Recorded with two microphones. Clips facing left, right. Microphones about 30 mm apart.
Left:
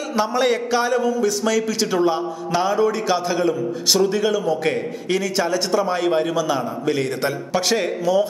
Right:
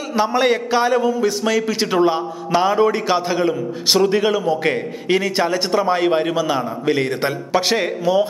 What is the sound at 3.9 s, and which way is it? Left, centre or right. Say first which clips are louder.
A man's voice: right 3 dB; right.